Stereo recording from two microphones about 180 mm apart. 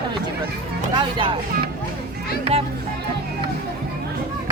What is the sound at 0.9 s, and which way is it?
Speech, 25° right (ahead or behind).